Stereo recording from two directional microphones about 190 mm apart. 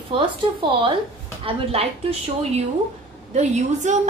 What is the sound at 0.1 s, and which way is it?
A woman's voice, 25° right (ahead or behind).